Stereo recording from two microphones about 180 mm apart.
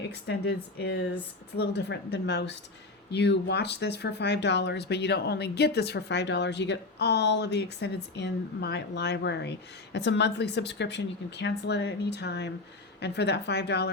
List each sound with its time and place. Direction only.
0.1 s speech: 65° left (ahead or behind)